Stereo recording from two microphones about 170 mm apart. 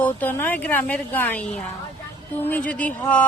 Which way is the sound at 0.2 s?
10° left (ahead or behind).